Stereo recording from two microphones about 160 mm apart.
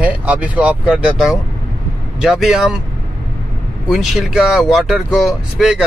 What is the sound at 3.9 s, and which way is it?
Speech, centre (ahead or behind).